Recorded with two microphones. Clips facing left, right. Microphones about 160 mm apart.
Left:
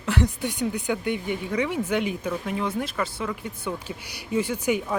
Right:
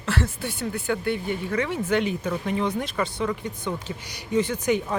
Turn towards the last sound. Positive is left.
turn(degrees=10)  # may be behind; listen again after turning